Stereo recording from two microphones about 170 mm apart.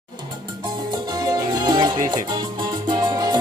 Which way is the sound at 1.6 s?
25° right (ahead or behind).